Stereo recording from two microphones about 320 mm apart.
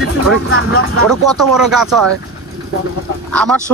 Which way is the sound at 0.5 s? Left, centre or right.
Left.